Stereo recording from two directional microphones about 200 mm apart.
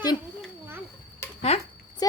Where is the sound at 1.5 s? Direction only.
30° left (ahead or behind).